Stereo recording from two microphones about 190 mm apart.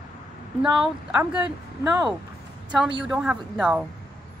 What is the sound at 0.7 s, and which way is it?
Speech, 5° right (ahead or behind).